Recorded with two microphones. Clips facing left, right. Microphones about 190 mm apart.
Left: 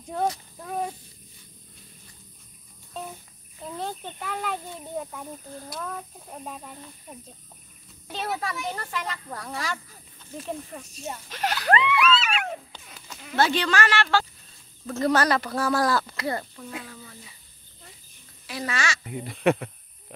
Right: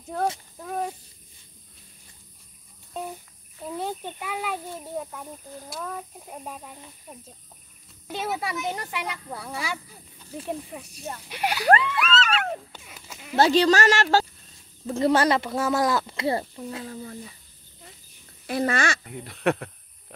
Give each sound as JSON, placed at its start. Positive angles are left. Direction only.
{"t": 0.1, "sound": "speech", "side_deg": 0}
{"t": 0.6, "sound": "a sound", "side_deg": 0}
{"t": 2.9, "sound": "cricket", "side_deg": -10}
{"t": 3.6, "sound": "speech", "side_deg": -10}
{"t": 8.3, "sound": "speech", "side_deg": -10}
{"t": 12.0, "sound": "a sound", "side_deg": 10}
{"t": 12.7, "sound": "sheep", "side_deg": -10}
{"t": 13.4, "sound": "speech", "side_deg": -35}
{"t": 14.9, "sound": "speech", "side_deg": -25}
{"t": 18.5, "sound": "speech", "side_deg": -55}
{"t": 19.0, "sound": "speech", "side_deg": 0}